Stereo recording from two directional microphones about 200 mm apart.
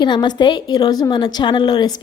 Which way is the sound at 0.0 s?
20° left (ahead or behind).